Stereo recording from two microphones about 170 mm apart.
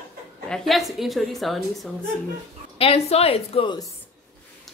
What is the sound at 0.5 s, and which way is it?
A woman's voice, centre (ahead or behind).